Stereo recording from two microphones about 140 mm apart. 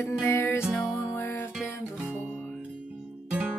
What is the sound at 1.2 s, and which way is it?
Music, 15° left (ahead or behind).